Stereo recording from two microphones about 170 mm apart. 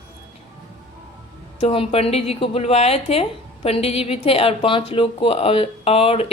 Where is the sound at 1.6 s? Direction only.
35° left (ahead or behind).